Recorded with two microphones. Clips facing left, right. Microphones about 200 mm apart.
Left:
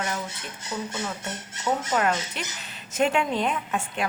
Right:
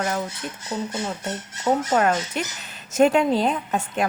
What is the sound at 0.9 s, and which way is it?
Speech, 30° right (ahead or behind).